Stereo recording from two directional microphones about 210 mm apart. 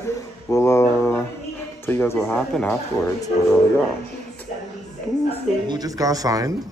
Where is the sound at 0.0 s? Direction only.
15° left (ahead or behind).